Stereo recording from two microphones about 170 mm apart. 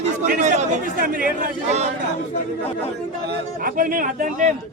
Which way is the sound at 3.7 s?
55° right (ahead or behind).